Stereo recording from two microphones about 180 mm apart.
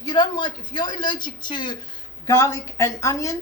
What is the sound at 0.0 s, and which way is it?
A woman's voice, 25° left (ahead or behind).